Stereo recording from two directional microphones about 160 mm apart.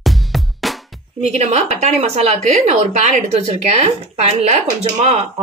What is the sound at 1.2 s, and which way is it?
Speech, 45° right (ahead or behind).